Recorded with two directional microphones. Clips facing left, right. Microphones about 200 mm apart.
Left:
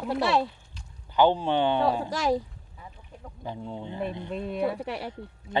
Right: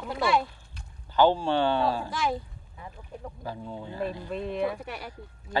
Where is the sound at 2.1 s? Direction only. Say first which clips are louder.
Left 4 dB; 40° left (ahead or behind).